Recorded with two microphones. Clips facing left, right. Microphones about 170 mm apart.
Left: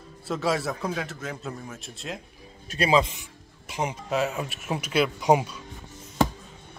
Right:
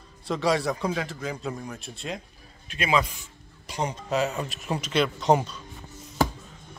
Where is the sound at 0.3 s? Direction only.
Centre (ahead or behind).